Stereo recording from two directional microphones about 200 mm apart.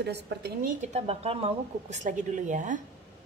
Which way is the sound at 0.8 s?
30° right (ahead or behind).